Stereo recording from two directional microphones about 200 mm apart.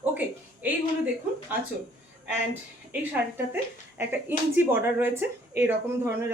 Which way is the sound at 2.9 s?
10° right (ahead or behind).